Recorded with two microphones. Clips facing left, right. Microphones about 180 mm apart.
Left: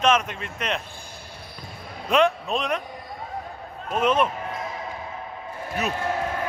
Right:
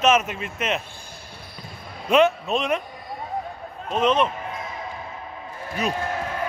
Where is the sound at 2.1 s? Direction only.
Centre (ahead or behind).